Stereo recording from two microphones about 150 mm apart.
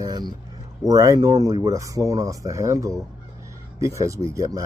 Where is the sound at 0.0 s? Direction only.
25° right (ahead or behind).